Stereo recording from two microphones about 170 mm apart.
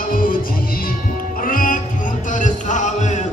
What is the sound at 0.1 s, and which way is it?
Music, 55° left (ahead or behind).